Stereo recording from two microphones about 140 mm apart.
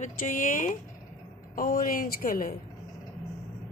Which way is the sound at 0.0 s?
70° left (ahead or behind).